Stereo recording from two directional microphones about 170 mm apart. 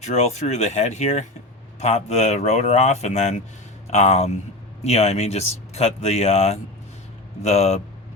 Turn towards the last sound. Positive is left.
turn(degrees=40)  # may be behind; listen again after turning